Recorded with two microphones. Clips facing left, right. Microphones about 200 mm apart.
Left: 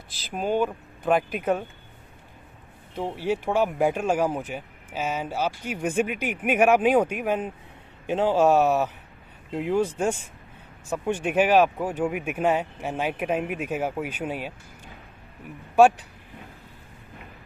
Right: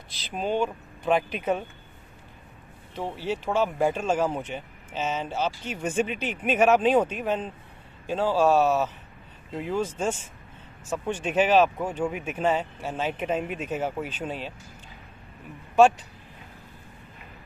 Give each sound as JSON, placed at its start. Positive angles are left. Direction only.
{"t": 0.4, "sound": "speech", "side_deg": 15}
{"t": 3.0, "sound": "speech", "side_deg": 15}
{"t": 15.7, "sound": "speech", "side_deg": 10}